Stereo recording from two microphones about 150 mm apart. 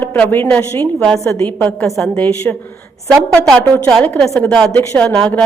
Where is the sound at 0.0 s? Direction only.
15° left (ahead or behind).